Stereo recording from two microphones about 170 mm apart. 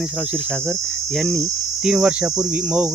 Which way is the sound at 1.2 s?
Centre (ahead or behind).